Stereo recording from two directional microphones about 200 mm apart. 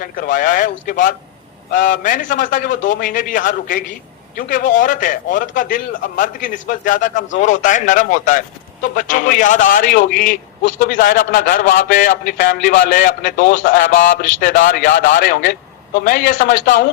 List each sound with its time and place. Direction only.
0.0 s a man's voice: 40° left (ahead or behind)
16.6 s speech: 55° left (ahead or behind)